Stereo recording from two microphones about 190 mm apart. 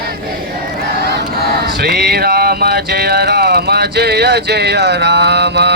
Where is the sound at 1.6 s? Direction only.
55° right (ahead or behind).